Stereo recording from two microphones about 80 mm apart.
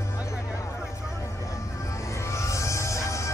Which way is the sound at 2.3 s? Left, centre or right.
Left.